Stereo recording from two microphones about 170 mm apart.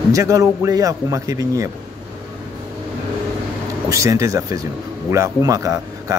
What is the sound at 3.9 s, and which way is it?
A man's voice, 20° right (ahead or behind).